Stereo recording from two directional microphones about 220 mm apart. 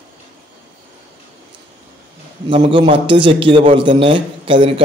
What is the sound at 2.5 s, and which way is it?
A man's voice, 25° right (ahead or behind).